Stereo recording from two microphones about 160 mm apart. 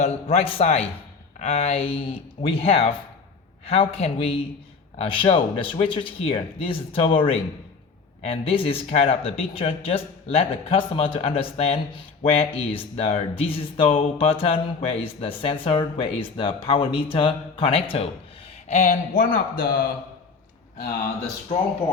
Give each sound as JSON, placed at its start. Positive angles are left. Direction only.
{"t": 0.0, "sound": "speech", "side_deg": 40}
{"t": 18.7, "sound": "speech", "side_deg": 50}
{"t": 19.2, "sound": "speech", "side_deg": 65}